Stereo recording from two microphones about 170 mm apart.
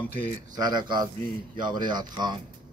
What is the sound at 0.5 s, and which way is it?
A man's voice, 25° right (ahead or behind).